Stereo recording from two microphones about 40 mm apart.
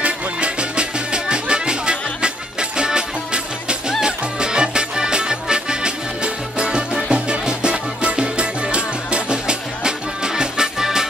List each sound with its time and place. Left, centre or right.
0.0 s music: right